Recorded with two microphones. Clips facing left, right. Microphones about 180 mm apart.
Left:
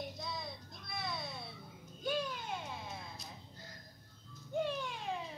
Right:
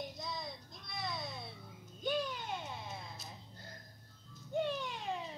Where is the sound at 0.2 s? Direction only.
Centre (ahead or behind).